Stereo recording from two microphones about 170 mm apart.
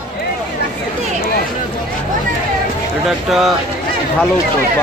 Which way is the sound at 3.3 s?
Centre (ahead or behind).